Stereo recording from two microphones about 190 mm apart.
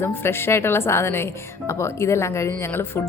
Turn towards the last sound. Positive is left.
turn(degrees=10)  # may be behind; listen again after turning